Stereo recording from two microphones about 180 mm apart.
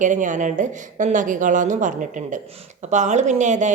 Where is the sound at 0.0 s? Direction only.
45° right (ahead or behind).